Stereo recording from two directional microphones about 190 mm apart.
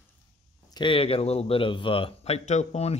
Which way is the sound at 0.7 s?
25° left (ahead or behind).